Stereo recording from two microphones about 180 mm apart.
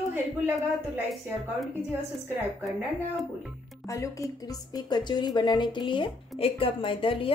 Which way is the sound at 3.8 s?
15° left (ahead or behind).